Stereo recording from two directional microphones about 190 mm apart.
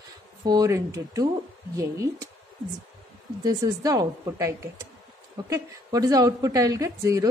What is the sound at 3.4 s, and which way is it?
A woman's voice, 20° right (ahead or behind).